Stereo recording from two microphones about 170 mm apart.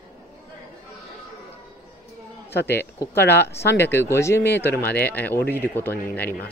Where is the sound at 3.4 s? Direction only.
80° left.